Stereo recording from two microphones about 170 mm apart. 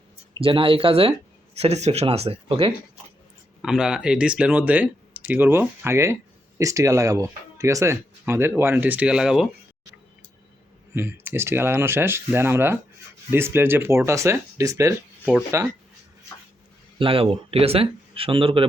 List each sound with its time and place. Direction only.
0.3 s speech: 30° right (ahead or behind)
3.6 s speech: 5° right (ahead or behind)
10.9 s speech: 10° right (ahead or behind)
17.0 s speech: 30° right (ahead or behind)